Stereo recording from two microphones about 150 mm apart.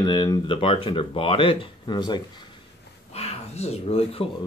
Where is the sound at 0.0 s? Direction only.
25° left (ahead or behind).